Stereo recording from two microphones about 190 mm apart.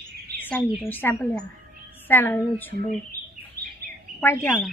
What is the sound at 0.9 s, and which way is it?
Speech, 10° left (ahead or behind).